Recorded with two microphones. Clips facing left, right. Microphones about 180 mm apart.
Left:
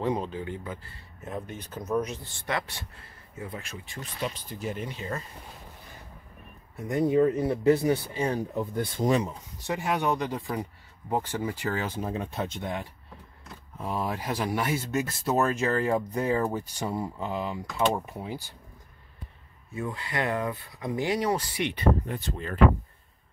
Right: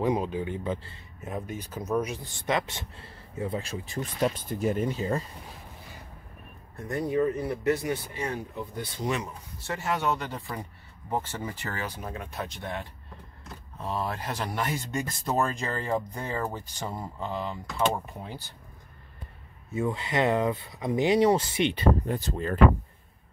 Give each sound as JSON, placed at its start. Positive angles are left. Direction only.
{"t": 0.0, "sound": "speech", "side_deg": -10}
{"t": 1.2, "sound": "speech", "side_deg": -10}
{"t": 2.4, "sound": "speech", "side_deg": -20}
{"t": 6.9, "sound": "speech", "side_deg": 20}
{"t": 9.6, "sound": "speech", "side_deg": 15}
{"t": 11.8, "sound": "speech", "side_deg": 25}
{"t": 19.7, "sound": "speech", "side_deg": -25}